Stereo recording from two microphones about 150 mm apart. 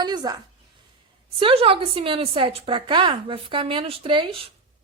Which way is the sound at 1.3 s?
40° right (ahead or behind).